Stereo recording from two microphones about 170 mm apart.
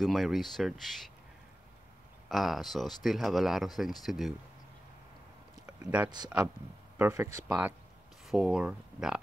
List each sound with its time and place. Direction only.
0.0 s speech: centre (ahead or behind)
2.2 s speech: centre (ahead or behind)
6.0 s speech: 25° right (ahead or behind); by 9.2 s 5° right (ahead or behind)